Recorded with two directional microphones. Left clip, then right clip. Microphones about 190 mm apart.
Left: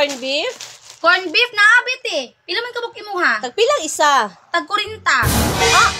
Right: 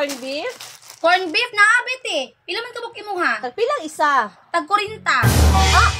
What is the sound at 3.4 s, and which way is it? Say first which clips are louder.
Speech: left 5 dB; 45° left (ahead or behind).